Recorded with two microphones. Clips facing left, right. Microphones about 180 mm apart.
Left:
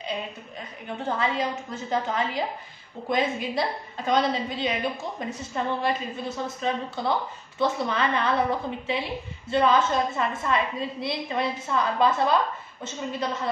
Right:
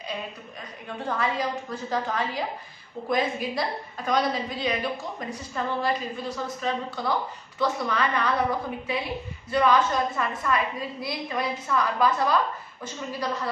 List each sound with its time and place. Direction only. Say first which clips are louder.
0.8 s a woman's voice: left 1 dB; 25° left (ahead or behind)